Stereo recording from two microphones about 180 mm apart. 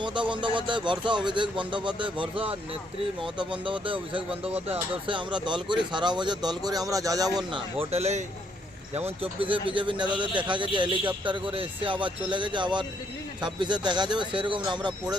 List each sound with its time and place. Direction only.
0.0 s speech: 25° right (ahead or behind)